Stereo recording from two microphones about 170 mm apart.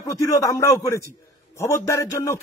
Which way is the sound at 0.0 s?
20° left (ahead or behind).